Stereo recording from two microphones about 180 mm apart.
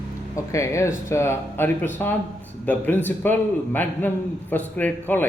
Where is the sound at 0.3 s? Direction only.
15° left (ahead or behind).